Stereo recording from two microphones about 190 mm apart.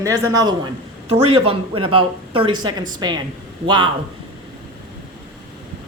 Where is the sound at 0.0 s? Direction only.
15° right (ahead or behind).